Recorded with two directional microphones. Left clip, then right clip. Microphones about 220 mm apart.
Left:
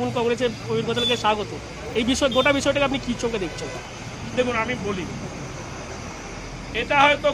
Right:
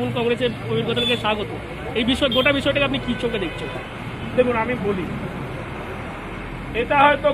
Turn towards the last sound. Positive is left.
turn(degrees=25)  # may be behind; listen again after turning